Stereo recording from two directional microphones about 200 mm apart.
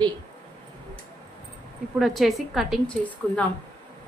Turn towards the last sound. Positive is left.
turn(degrees=5)  # may be behind; listen again after turning